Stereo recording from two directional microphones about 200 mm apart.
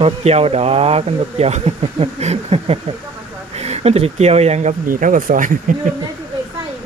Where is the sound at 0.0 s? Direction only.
30° right (ahead or behind).